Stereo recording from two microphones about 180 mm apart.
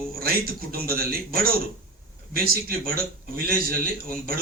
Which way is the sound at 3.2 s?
55° right (ahead or behind).